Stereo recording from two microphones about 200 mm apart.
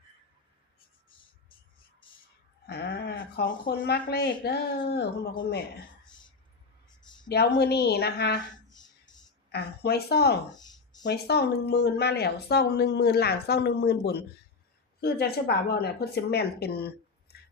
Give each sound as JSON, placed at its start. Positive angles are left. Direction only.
{"t": 2.6, "sound": "speech", "side_deg": 55}
{"t": 7.6, "sound": "speech", "side_deg": 55}
{"t": 9.5, "sound": "speech", "side_deg": 55}
{"t": 10.5, "sound": "a sound", "side_deg": 20}
{"t": 11.0, "sound": "speech", "side_deg": 55}